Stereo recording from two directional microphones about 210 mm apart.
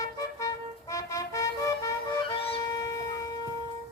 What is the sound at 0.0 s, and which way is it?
Music, 15° left (ahead or behind).